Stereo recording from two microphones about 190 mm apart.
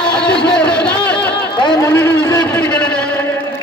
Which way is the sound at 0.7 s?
5° left (ahead or behind).